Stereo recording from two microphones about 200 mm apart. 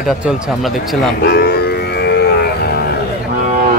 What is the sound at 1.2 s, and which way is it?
Music, 55° left (ahead or behind).